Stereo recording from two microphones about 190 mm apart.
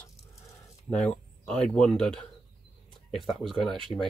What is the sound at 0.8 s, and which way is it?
Speech, 5° left (ahead or behind).